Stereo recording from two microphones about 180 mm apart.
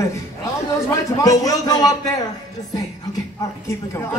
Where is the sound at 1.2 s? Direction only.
20° left (ahead or behind).